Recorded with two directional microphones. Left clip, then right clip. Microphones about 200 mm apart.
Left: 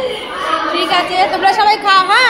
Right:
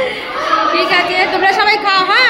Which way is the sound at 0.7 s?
Centre (ahead or behind).